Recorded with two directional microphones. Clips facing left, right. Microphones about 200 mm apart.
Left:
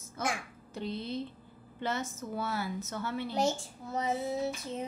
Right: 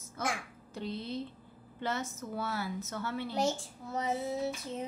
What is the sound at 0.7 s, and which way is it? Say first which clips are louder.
A child's voice: left 1 dB; 20° left (ahead or behind).